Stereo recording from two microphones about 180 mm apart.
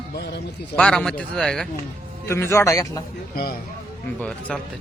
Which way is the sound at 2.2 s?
15° left (ahead or behind).